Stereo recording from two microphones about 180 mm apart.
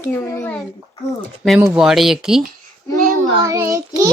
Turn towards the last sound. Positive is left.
turn(degrees=-20)  # may be behind; listen again after turning